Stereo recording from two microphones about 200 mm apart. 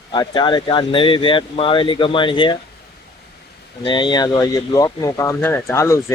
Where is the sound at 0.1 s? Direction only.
20° left (ahead or behind).